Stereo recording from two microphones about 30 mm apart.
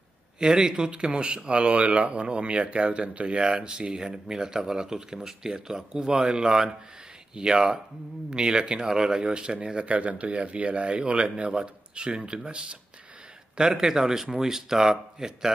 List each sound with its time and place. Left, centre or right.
0.4 s speech: right
0.9 s speech: right
1.8 s speech: right
3.5 s speech: right
8.8 s speech: centre
9.1 s speech: right
9.8 s speech: right
13.6 s speech: right